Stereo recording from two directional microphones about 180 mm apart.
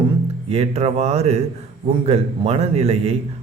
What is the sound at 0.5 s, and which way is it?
A man's voice, 35° right (ahead or behind).